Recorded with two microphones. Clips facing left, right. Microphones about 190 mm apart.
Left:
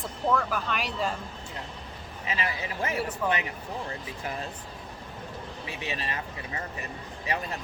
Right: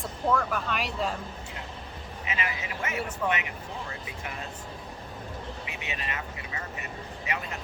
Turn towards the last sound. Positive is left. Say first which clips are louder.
# left 3 dB
turn(degrees=35)  # may be behind; listen again after turning